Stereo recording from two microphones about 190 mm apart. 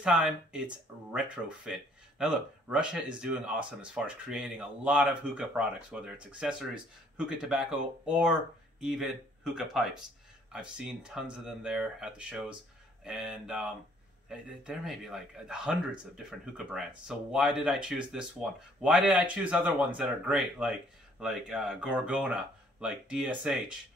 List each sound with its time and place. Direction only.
0.0 s speech: 5° right (ahead or behind)